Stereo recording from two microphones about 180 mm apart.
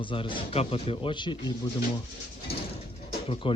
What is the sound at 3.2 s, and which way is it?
Speech, 30° left (ahead or behind).